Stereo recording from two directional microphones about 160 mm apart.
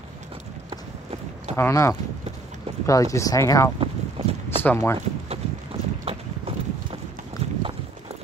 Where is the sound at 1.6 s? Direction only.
20° left (ahead or behind).